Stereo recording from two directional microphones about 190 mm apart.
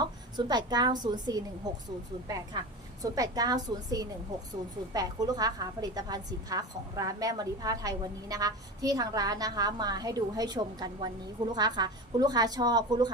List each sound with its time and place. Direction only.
0.0 s a woman's voice: 20° right (ahead or behind)